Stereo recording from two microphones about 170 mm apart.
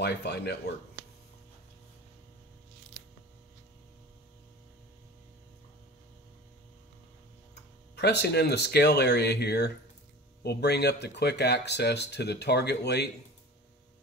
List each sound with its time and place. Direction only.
0.0 s speech: 75° left (ahead or behind)
7.9 s speech: 80° left